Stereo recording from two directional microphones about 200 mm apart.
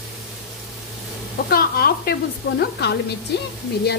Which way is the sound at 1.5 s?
50° left (ahead or behind).